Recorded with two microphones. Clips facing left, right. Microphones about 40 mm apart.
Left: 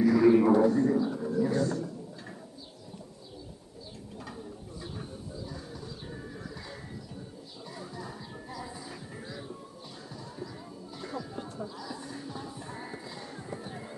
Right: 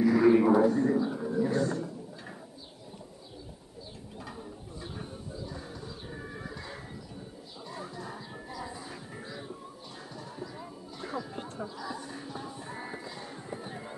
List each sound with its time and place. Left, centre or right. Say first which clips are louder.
0.1 s a sound: even; centre
4.9 s wild animals: even; centre
8.5 s a sound: right 1 dB; centre
8.8 s music: even; centre
11.0 s music: right 2 dB; centre
11.3 s chatter: even; right
11.8 s music: right 1 dB; centre